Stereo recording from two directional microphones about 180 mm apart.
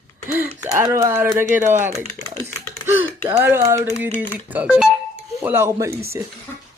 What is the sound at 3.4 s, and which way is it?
Speech, 15° right (ahead or behind).